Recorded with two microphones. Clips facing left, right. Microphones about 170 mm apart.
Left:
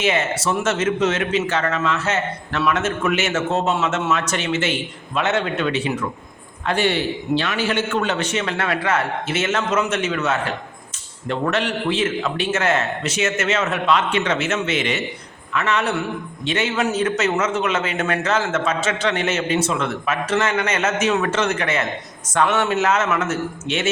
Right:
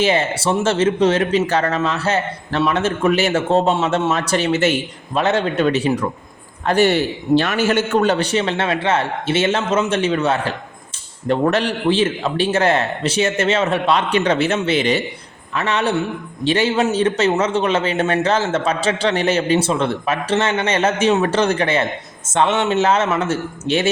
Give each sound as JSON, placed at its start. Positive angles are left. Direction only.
{"t": 0.0, "sound": "a man's voice", "side_deg": -30}